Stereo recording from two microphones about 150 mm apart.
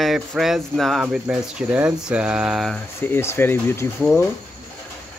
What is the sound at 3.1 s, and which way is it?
Speech, 15° left (ahead or behind).